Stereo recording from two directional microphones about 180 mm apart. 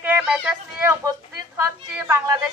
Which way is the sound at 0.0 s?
10° right (ahead or behind).